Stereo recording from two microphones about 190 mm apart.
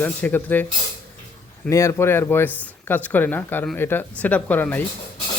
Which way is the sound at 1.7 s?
15° left (ahead or behind).